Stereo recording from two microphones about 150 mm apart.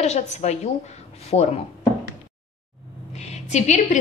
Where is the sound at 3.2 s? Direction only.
50° left (ahead or behind).